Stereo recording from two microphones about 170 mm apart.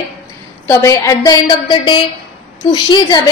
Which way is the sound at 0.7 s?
15° left (ahead or behind).